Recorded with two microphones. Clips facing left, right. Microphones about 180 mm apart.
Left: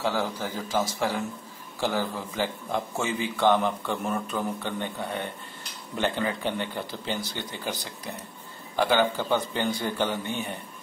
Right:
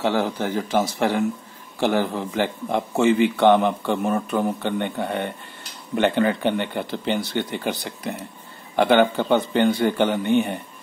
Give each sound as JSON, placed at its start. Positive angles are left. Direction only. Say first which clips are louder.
{"t": 0.0, "sound": "a man's voice", "louder": "right 6 dB", "side_deg": -65}